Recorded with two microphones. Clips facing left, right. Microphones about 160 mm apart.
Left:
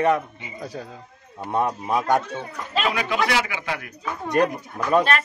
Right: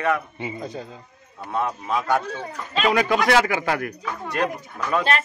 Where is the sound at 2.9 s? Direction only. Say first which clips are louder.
Right 7 dB; 45° right (ahead or behind).